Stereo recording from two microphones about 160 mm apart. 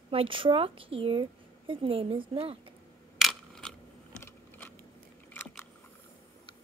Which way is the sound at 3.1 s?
Centre (ahead or behind).